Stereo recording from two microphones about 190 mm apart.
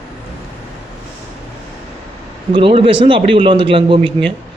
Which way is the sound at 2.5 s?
30° right (ahead or behind).